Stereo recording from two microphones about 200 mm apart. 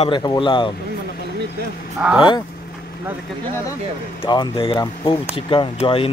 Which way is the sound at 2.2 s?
25° left (ahead or behind).